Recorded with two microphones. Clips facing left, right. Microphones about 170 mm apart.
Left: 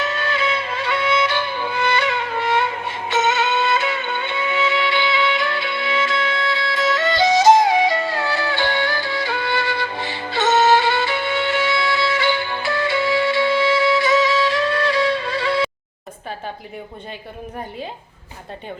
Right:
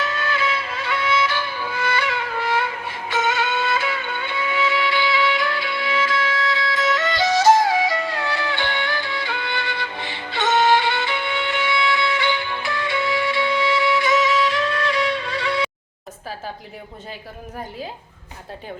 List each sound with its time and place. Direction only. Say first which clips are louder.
0.0 s music: left 2 dB; 25° left (ahead or behind)
7.3 s music: left 2 dB; 15° left (ahead or behind); by 15.7 s 30° left (ahead or behind)